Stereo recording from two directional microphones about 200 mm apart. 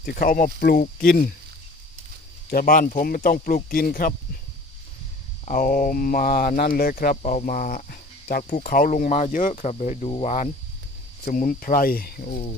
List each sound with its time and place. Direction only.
0.0 s speech: 45° left (ahead or behind)
2.5 s speech: 45° left (ahead or behind)
5.5 s speech: 40° left (ahead or behind)